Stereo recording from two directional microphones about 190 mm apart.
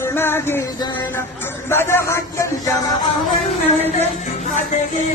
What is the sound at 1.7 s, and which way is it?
Speech, 10° left (ahead or behind).